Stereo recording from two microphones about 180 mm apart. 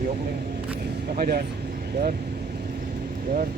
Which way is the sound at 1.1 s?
55° right (ahead or behind).